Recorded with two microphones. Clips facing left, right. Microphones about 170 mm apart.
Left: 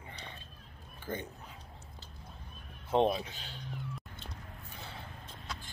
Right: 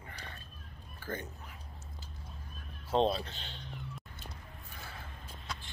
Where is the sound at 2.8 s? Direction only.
15° left (ahead or behind).